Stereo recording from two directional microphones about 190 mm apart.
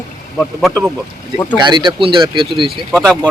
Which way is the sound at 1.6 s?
25° right (ahead or behind).